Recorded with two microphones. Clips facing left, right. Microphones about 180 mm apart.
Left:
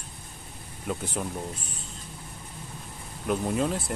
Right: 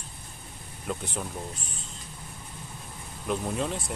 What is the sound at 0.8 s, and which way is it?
Speech, 10° left (ahead or behind).